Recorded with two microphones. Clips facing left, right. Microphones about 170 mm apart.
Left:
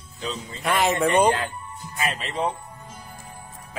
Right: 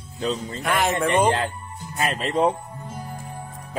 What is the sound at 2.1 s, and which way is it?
Speech, 45° right (ahead or behind).